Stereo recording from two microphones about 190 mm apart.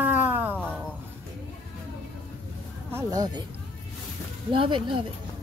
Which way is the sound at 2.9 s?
20° right (ahead or behind).